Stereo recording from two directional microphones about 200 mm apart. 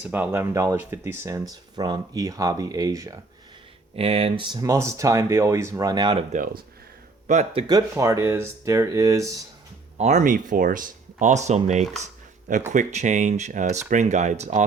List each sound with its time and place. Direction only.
0.0 s speech: 10° right (ahead or behind)
3.9 s speech: 30° right (ahead or behind)
7.3 s speech: 35° right (ahead or behind)
7.7 s speech: 15° right (ahead or behind)
10.0 s speech: 35° right (ahead or behind)